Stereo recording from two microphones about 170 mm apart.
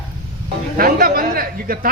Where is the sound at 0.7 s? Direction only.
60° right (ahead or behind).